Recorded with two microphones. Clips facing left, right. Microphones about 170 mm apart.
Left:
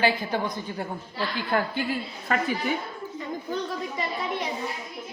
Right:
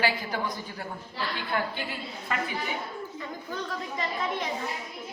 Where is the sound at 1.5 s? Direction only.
45° left (ahead or behind).